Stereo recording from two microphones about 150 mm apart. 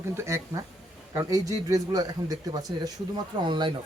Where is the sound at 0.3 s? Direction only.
20° right (ahead or behind).